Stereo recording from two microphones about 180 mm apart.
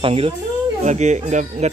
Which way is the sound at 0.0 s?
35° right (ahead or behind).